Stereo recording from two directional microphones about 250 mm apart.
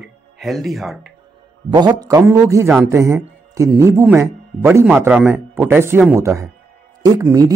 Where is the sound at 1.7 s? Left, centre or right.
Centre.